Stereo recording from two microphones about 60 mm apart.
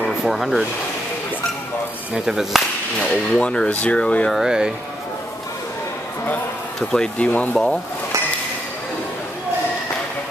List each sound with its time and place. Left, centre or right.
0.2 s speech: centre
2.1 s speech: centre
3.3 s speech: centre
4.3 s speech: centre
6.8 s speech: centre
7.2 s speech: left
7.5 s speech: centre